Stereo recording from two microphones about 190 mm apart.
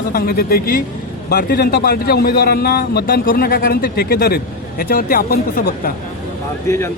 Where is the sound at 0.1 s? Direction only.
55° left (ahead or behind).